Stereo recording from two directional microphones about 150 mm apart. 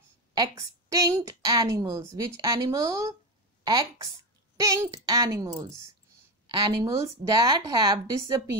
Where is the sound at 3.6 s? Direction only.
30° right (ahead or behind).